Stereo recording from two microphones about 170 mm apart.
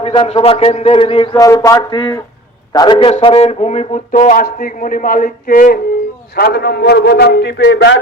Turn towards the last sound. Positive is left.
turn(degrees=85)